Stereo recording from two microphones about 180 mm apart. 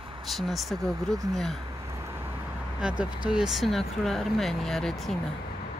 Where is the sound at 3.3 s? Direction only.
Centre (ahead or behind).